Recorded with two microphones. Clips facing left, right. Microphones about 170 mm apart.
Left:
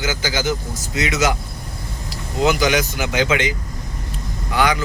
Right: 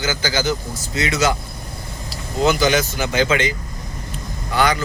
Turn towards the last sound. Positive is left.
turn(degrees=15)  # may be behind; listen again after turning